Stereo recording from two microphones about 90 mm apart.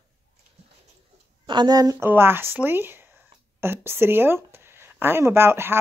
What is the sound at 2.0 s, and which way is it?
Speech, 25° right (ahead or behind).